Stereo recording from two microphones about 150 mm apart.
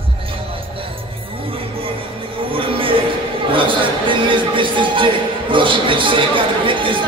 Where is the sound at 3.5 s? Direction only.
35° right (ahead or behind).